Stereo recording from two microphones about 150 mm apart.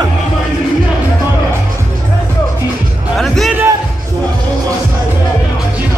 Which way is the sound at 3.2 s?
Centre (ahead or behind).